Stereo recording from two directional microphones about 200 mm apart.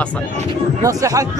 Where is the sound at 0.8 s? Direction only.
15° right (ahead or behind).